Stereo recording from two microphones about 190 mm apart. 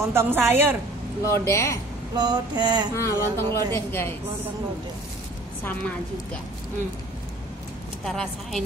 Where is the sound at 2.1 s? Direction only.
20° right (ahead or behind).